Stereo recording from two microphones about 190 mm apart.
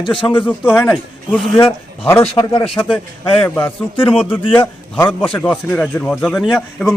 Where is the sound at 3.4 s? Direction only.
5° left (ahead or behind).